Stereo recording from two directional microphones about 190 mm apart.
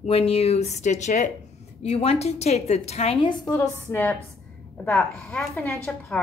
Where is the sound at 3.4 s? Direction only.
20° left (ahead or behind).